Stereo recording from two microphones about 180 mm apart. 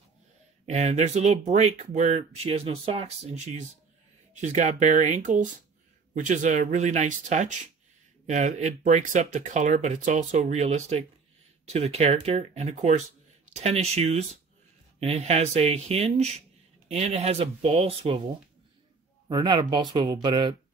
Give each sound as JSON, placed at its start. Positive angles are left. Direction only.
{"t": 0.7, "sound": "speech", "side_deg": -40}
{"t": 19.2, "sound": "speech", "side_deg": -25}